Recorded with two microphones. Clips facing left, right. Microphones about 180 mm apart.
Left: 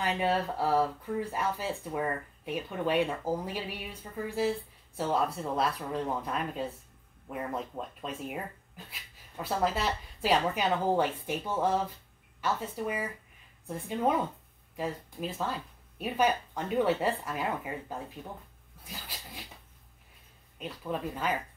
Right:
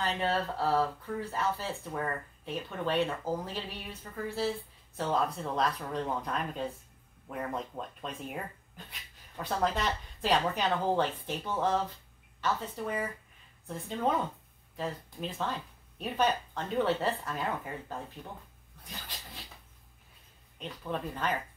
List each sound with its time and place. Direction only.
0.0 s speech: 10° left (ahead or behind)
18.9 s a sound: 5° left (ahead or behind)
20.5 s speech: 5° left (ahead or behind)